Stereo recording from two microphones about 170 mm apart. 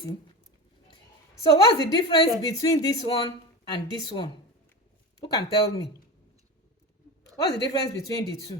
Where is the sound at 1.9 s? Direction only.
30° left (ahead or behind).